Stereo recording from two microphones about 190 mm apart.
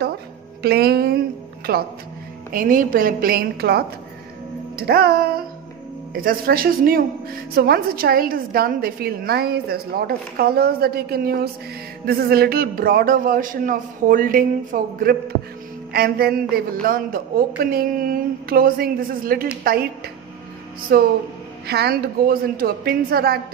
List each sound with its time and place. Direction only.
0.6 s a woman's voice: 55° right (ahead or behind)
20.9 s a woman's voice: 50° right (ahead or behind)